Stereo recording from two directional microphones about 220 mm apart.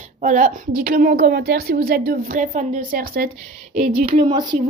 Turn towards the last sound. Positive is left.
turn(degrees=-20)  # may be behind; listen again after turning